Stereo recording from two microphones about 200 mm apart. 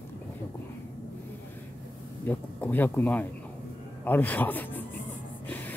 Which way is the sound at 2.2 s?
10° left (ahead or behind).